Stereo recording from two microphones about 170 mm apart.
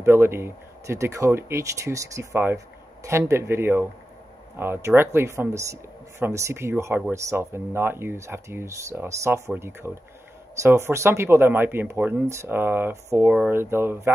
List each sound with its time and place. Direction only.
0.0 s speech: 15° right (ahead or behind)